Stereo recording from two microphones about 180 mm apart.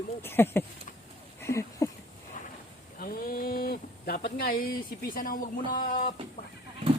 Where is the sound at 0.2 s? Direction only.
10° left (ahead or behind).